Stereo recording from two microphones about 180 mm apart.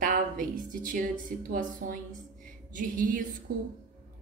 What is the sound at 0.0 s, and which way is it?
A woman's voice, 50° right (ahead or behind).